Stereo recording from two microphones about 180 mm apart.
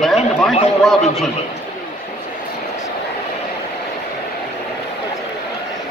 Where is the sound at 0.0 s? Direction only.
Centre (ahead or behind).